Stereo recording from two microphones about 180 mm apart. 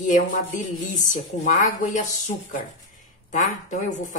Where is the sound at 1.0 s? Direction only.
45° left (ahead or behind).